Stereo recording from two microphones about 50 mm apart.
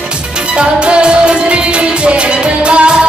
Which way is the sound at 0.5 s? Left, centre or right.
Right.